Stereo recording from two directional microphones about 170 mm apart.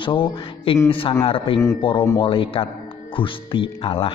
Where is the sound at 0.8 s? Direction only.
30° left (ahead or behind).